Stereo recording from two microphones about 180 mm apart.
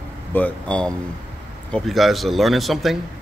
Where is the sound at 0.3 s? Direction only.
5° left (ahead or behind).